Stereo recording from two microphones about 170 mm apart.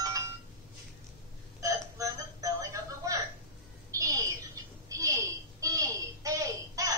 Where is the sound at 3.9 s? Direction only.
20° right (ahead or behind).